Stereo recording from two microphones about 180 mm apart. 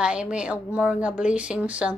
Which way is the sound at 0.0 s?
5° right (ahead or behind).